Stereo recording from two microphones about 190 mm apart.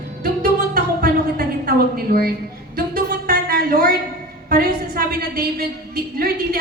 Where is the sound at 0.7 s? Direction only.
55° right (ahead or behind).